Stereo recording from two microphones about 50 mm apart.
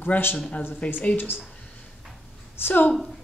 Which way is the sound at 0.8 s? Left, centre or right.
Left.